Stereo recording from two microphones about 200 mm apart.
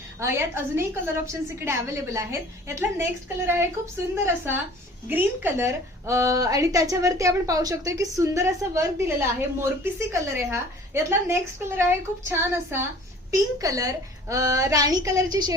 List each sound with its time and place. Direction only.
0.2 s a woman's voice: 15° right (ahead or behind)